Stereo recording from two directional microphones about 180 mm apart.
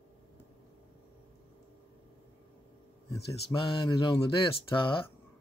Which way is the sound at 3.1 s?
30° left (ahead or behind).